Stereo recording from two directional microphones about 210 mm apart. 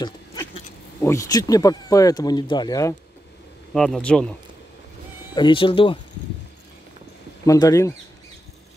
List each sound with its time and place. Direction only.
0.0 s a sound: 20° left (ahead or behind)
1.0 s speech: 15° left (ahead or behind)
3.7 s speech: centre (ahead or behind)
5.3 s speech: 25° left (ahead or behind)
7.4 s speech: 15° left (ahead or behind)